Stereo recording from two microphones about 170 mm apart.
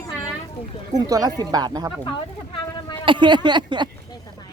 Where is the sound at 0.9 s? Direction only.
20° right (ahead or behind).